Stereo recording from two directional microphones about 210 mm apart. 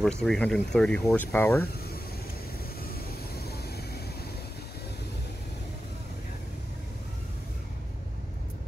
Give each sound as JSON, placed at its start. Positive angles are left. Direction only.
{"t": 0.0, "sound": "speech", "side_deg": 5}
{"t": 2.8, "sound": "vehicle", "side_deg": 45}